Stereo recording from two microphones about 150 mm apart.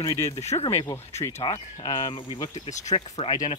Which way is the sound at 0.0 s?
20° left (ahead or behind).